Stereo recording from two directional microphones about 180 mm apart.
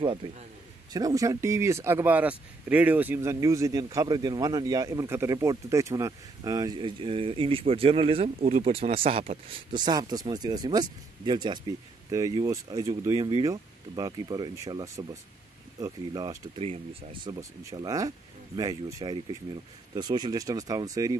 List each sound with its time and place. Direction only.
0.0 s speech: 30° right (ahead or behind)
0.9 s speech: 20° right (ahead or behind)